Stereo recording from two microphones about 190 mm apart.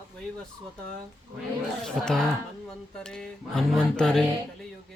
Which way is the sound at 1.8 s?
5° left (ahead or behind).